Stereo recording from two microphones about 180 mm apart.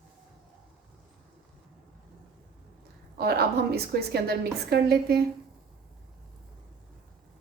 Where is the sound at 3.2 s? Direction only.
60° right (ahead or behind).